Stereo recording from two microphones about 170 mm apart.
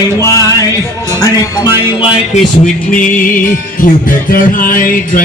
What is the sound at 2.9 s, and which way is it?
Music, 50° left (ahead or behind).